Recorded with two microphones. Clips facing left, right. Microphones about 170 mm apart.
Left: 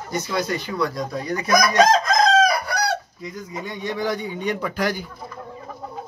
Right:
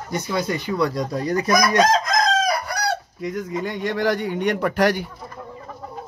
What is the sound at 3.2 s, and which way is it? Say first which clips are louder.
Speech: right 7 dB; 75° right (ahead or behind).